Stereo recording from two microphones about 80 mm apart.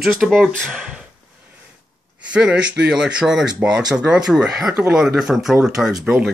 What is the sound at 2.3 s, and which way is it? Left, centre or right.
Speech, centre.